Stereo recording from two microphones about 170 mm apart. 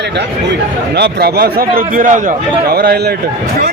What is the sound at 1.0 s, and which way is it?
A man's voice, 70° right (ahead or behind).